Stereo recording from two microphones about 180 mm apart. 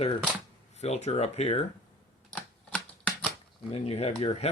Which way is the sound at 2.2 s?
5° left (ahead or behind).